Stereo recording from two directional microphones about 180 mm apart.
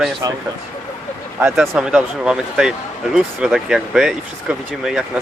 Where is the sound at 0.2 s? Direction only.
20° right (ahead or behind).